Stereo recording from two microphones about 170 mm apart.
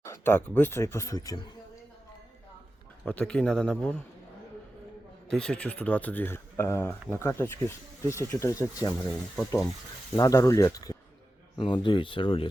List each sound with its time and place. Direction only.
0.0 s speech: 15° left (ahead or behind)
3.0 s speech: 5° left (ahead or behind)
5.3 s speech: 5° left (ahead or behind)
8.9 s speech: centre (ahead or behind)
10.2 s speech: 20° left (ahead or behind)